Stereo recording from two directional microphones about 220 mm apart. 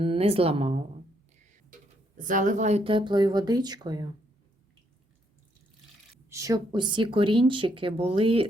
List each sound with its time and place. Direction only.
0.0 s speech: 25° right (ahead or behind)
2.1 s speech: 35° right (ahead or behind); by 4.1 s 20° right (ahead or behind)
6.3 s speech: 15° right (ahead or behind)